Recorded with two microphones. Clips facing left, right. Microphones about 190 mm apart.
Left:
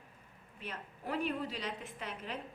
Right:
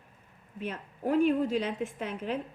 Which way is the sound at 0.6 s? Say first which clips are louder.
Right 10 dB; 45° right (ahead or behind).